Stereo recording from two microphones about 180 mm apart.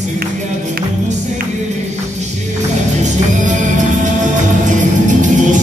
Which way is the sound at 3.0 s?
45° right (ahead or behind).